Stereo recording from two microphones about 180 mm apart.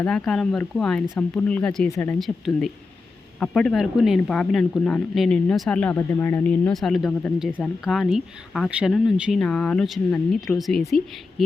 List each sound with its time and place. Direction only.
0.0 s speech: 5° left (ahead or behind)